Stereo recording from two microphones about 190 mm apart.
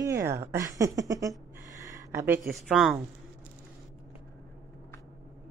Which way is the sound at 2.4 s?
Centre (ahead or behind).